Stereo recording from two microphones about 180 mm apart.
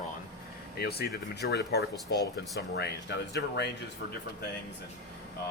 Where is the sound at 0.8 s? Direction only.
60° left (ahead or behind).